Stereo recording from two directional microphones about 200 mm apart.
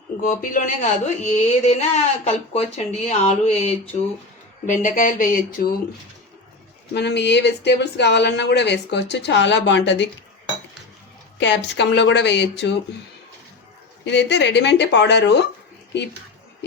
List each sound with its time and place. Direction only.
0.2 s speech: 40° left (ahead or behind)
6.9 s speech: 60° left (ahead or behind)
11.3 s speech: 60° left (ahead or behind)
14.0 s speech: 60° left (ahead or behind)